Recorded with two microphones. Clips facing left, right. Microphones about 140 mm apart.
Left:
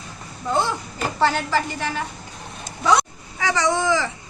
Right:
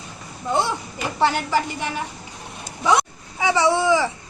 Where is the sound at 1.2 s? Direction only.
15° right (ahead or behind).